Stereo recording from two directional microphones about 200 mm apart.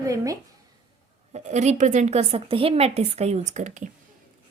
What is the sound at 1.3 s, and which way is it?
A woman's voice, 35° right (ahead or behind).